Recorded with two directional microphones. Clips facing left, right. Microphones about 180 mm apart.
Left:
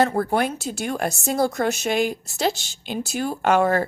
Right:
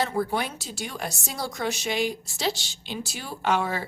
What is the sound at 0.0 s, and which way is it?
Speech, 50° left (ahead or behind).